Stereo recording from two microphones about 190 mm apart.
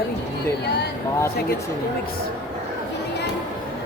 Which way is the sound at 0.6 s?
60° left (ahead or behind).